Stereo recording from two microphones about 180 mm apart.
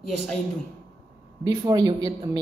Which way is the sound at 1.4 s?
20° right (ahead or behind).